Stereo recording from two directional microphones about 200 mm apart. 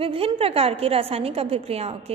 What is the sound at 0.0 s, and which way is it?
A woman's voice, 25° right (ahead or behind).